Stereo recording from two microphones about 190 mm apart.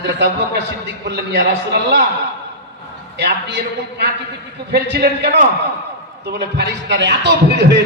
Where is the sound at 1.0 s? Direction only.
60° right (ahead or behind).